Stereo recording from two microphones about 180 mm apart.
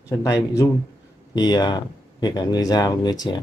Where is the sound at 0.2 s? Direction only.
15° left (ahead or behind).